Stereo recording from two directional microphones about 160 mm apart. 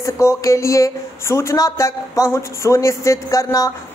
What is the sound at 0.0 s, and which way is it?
Speech, 20° left (ahead or behind).